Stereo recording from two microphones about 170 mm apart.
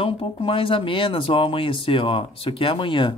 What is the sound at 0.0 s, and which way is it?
Speech, 35° left (ahead or behind).